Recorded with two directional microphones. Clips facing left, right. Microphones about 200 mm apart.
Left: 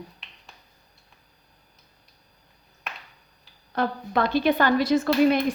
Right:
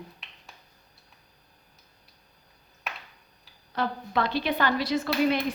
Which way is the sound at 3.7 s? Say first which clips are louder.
Left 3 dB; 50° left (ahead or behind).